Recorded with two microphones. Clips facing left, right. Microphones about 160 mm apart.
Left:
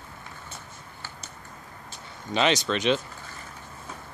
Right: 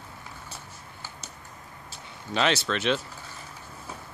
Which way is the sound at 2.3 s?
Centre (ahead or behind).